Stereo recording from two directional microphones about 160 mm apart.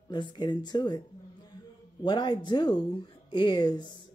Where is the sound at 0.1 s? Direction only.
30° left (ahead or behind).